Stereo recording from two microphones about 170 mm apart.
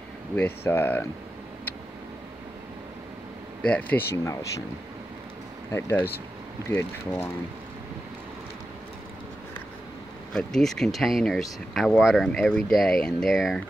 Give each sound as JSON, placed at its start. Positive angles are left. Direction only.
{"t": 0.4, "sound": "speech", "side_deg": 15}
{"t": 3.6, "sound": "speech", "side_deg": 10}
{"t": 5.7, "sound": "speech", "side_deg": 15}
{"t": 10.3, "sound": "speech", "side_deg": 0}